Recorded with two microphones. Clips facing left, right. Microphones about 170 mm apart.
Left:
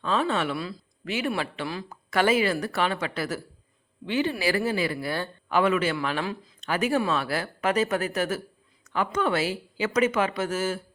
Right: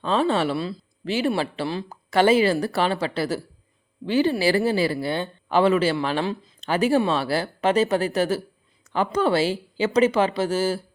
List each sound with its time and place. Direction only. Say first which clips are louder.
0.0 s speech: right 4 dB; 30° right (ahead or behind)